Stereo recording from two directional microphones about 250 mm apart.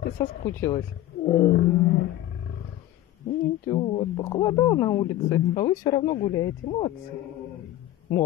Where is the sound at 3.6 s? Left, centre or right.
Centre.